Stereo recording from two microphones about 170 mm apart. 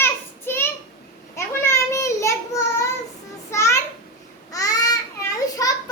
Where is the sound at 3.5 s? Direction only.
15° left (ahead or behind).